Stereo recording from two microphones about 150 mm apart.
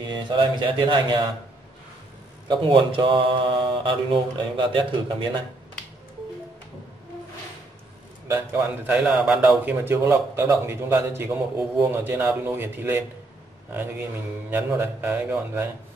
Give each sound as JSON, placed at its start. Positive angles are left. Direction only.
{"t": 0.0, "sound": "mantra", "side_deg": -30}
{"t": 2.4, "sound": "mantra", "side_deg": -30}
{"t": 8.3, "sound": "speech", "side_deg": -15}
{"t": 8.9, "sound": "speech", "side_deg": -5}